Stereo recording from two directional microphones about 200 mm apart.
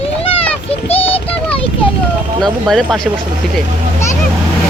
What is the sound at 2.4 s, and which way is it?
Speech, centre (ahead or behind).